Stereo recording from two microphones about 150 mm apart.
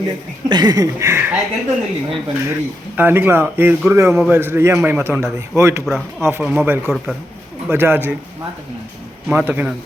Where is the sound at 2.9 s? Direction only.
10° right (ahead or behind).